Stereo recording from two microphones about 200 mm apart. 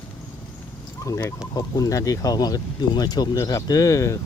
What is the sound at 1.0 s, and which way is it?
Speech, 15° left (ahead or behind).